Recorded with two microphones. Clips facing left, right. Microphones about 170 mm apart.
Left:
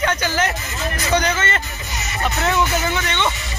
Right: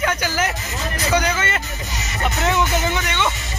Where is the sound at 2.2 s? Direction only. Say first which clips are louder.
Even; 20° right (ahead or behind).